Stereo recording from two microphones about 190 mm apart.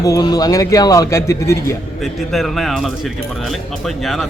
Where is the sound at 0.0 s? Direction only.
20° left (ahead or behind).